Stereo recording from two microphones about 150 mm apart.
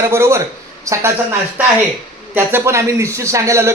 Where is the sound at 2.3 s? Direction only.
15° right (ahead or behind).